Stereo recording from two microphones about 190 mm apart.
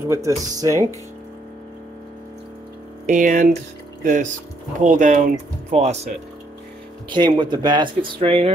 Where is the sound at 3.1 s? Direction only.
45° right (ahead or behind).